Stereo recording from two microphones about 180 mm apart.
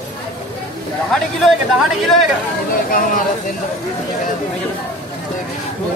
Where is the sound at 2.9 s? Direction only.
50° left (ahead or behind).